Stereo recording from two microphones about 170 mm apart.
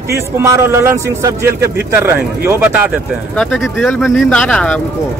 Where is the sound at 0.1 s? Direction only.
15° right (ahead or behind).